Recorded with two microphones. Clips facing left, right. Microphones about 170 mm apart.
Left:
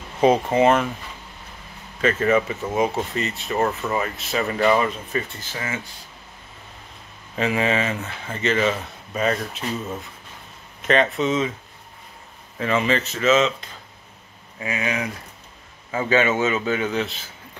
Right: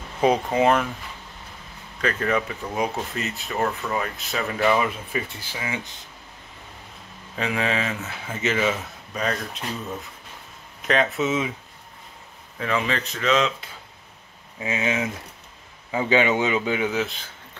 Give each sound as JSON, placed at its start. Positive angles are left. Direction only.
{"t": 0.2, "sound": "speech", "side_deg": 0}
{"t": 2.0, "sound": "speech", "side_deg": 5}
{"t": 7.3, "sound": "speech", "side_deg": 0}
{"t": 9.1, "sound": "speech", "side_deg": 5}
{"t": 12.5, "sound": "speech", "side_deg": 0}
{"t": 14.6, "sound": "speech", "side_deg": -25}
{"t": 17.0, "sound": "speech", "side_deg": 0}